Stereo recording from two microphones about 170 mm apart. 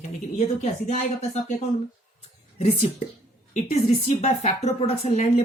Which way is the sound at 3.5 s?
40° left (ahead or behind).